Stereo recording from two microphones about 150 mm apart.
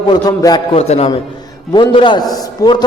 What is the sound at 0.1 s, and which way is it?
Speech, 30° left (ahead or behind).